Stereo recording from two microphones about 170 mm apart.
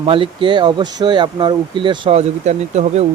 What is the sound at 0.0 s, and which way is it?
Speech, 30° right (ahead or behind).